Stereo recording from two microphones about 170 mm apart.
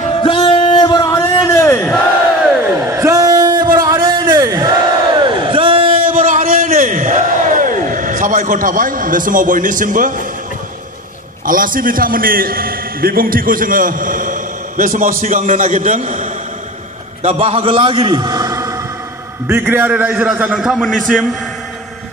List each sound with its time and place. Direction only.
0.1 s music: 30° left (ahead or behind)
1.1 s a sound: 15° left (ahead or behind)
2.8 s a sound: 15° right (ahead or behind)
4.3 s crowd: 20° right (ahead or behind)
5.2 s crowd: 30° right (ahead or behind)
5.9 s crowd: 55° right (ahead or behind)
11.4 s a man's voice: 55° right (ahead or behind); by 21.3 s 5° left (ahead or behind)